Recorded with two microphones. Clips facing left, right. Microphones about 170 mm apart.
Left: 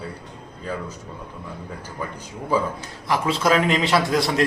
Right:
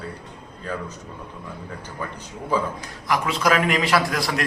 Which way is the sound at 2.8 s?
30° left (ahead or behind).